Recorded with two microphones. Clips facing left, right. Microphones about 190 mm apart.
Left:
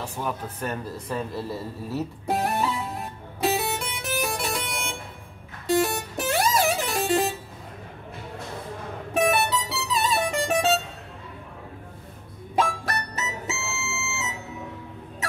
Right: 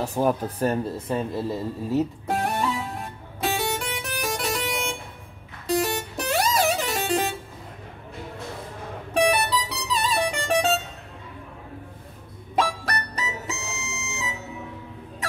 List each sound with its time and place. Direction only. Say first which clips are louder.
0.0 s speech: right 8 dB; 40° right (ahead or behind); by 2.0 s 20° right (ahead or behind)
2.2 s music: even; centre (ahead or behind)
9.1 s music: right 1 dB; centre (ahead or behind)
12.5 s music: even; centre (ahead or behind)